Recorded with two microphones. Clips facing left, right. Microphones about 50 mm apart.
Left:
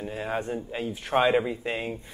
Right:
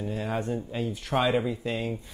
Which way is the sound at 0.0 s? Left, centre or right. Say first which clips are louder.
Even; centre.